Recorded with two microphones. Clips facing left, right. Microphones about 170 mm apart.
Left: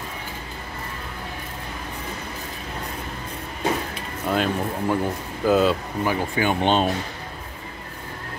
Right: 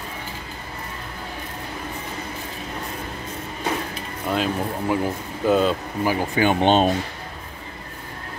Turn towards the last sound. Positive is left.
turn(degrees=-20)  # may be behind; listen again after turning